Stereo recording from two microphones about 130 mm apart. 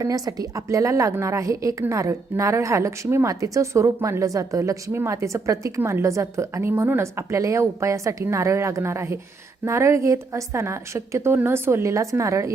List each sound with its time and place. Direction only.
0.0 s a woman's voice: 25° right (ahead or behind)